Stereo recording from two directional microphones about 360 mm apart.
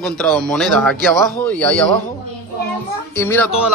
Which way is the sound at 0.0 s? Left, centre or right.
Centre.